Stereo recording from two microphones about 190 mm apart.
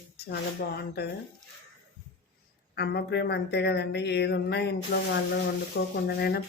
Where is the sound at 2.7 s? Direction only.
60° left (ahead or behind).